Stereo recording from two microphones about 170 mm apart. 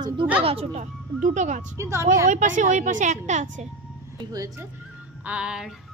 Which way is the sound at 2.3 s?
50° right (ahead or behind).